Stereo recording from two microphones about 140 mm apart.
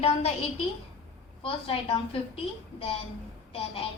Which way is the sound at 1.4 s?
40° left (ahead or behind).